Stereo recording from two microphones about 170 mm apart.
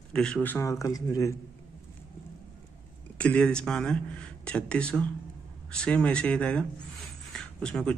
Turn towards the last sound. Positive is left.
turn(degrees=5)  # may be behind; listen again after turning